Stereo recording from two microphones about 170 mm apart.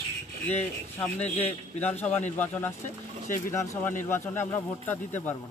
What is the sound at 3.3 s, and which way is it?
Speech, 15° left (ahead or behind).